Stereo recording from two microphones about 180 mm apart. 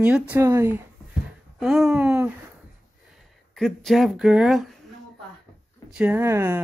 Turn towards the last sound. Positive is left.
turn(degrees=-15)  # may be behind; listen again after turning